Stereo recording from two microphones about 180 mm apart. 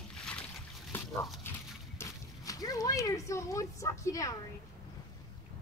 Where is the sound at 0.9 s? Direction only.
10° left (ahead or behind).